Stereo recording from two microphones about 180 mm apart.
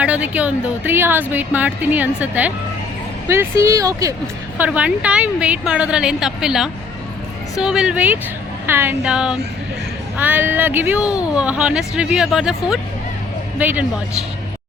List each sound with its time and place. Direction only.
0.0 s a woman's voice: 5° right (ahead or behind)